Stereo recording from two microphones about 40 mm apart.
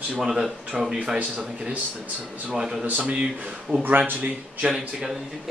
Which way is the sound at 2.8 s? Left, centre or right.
Right.